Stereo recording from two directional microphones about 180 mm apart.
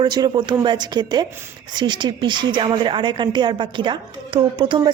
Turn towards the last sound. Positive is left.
turn(degrees=-25)  # may be behind; listen again after turning